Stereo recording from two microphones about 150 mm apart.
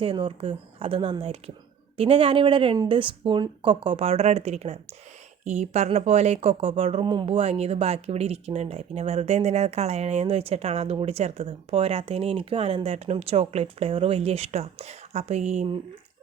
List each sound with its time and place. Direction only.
0.0 s speech: 35° right (ahead or behind)